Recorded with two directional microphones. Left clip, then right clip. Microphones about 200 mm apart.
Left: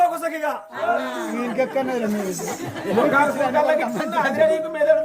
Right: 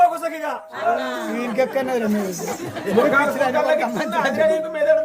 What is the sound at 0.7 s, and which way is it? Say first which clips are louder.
Speech: right 3 dB; 35° right (ahead or behind).